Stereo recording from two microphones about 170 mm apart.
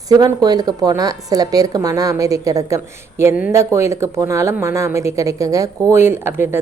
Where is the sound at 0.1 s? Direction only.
20° right (ahead or behind).